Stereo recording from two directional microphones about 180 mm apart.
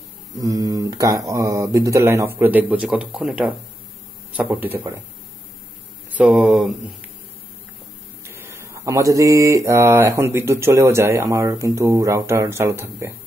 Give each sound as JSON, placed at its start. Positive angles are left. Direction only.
{"t": 0.3, "sound": "speech", "side_deg": -20}
{"t": 4.5, "sound": "speech", "side_deg": -10}
{"t": 6.1, "sound": "speech", "side_deg": -5}
{"t": 8.2, "sound": "speech", "side_deg": -15}